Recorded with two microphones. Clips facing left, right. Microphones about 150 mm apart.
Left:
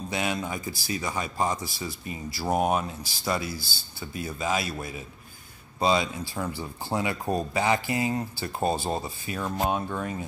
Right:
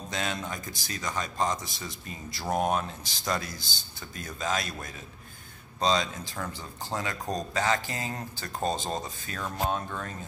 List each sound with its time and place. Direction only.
0.1 s speech: 10° left (ahead or behind)